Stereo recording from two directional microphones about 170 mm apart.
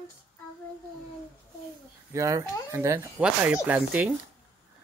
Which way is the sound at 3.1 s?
5° right (ahead or behind).